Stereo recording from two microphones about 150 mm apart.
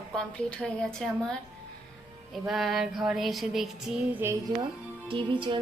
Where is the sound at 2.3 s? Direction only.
Centre (ahead or behind).